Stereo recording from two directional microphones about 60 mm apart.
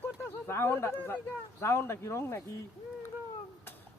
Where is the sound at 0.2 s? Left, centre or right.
Left.